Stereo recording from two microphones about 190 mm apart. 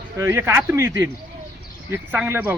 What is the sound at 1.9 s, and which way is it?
Speech, 10° right (ahead or behind).